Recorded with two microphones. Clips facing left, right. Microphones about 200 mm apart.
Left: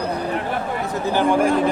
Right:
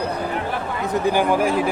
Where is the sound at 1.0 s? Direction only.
10° right (ahead or behind).